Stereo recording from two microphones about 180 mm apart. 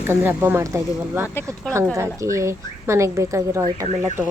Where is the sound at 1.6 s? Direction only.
5° left (ahead or behind).